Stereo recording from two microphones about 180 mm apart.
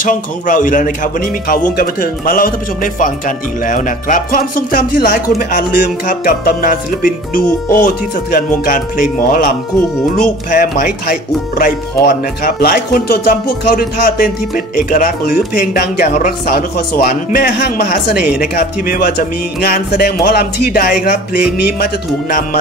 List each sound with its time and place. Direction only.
0.0 s speech: 45° left (ahead or behind)
10.5 s speech: 50° left (ahead or behind)